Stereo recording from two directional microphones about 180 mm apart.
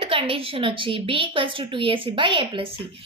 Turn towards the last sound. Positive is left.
turn(degrees=-30)  # may be behind; listen again after turning